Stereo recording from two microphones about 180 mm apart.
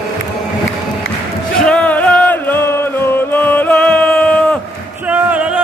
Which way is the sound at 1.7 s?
5° left (ahead or behind).